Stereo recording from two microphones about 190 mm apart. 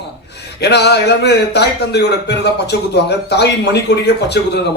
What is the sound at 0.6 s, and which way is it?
A man's voice, 60° left (ahead or behind).